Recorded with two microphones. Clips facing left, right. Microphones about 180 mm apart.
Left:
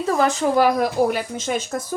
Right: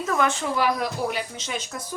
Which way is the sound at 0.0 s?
35° left (ahead or behind).